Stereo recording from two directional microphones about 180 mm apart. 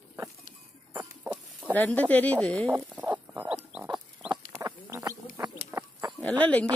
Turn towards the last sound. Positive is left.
turn(degrees=10)  # may be behind; listen again after turning